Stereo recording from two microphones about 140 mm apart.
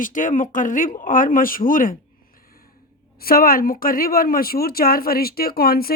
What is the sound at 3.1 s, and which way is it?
A woman's voice, 90° left.